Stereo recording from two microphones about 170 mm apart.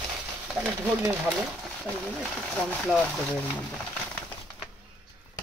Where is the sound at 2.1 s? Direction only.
5° left (ahead or behind).